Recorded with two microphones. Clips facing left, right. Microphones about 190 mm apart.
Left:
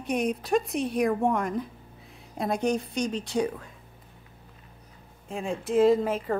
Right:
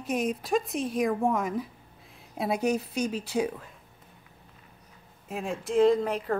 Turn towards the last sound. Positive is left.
turn(degrees=0)  # may be behind; listen again after turning